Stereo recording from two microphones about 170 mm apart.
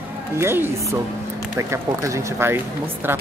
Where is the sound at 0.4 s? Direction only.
15° right (ahead or behind).